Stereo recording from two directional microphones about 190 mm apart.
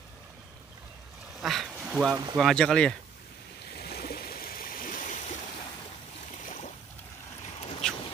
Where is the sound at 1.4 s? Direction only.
Centre (ahead or behind).